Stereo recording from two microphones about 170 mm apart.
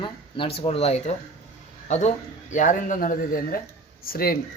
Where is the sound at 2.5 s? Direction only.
50° left (ahead or behind).